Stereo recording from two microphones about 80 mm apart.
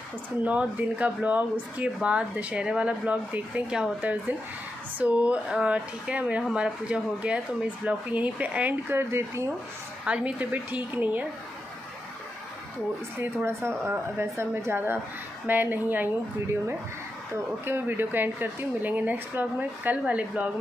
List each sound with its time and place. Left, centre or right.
0.4 s speech: centre
10.0 s speech: centre
13.2 s speech: right
17.6 s speech: right